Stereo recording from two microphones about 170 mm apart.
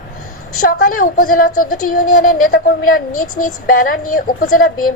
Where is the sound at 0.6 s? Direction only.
55° left (ahead or behind).